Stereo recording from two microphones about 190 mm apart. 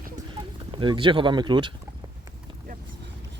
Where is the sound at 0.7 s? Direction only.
25° right (ahead or behind).